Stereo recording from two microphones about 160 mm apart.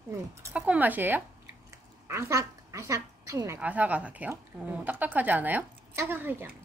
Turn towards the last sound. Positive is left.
turn(degrees=-15)  # may be behind; listen again after turning